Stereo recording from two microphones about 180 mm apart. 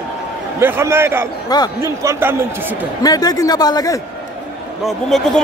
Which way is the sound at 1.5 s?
20° left (ahead or behind).